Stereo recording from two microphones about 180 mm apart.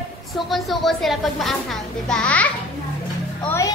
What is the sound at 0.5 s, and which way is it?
A child's voice, centre (ahead or behind).